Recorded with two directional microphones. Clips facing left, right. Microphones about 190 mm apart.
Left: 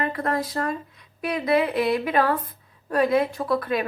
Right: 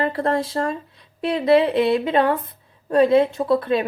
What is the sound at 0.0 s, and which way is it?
Speech, 30° right (ahead or behind).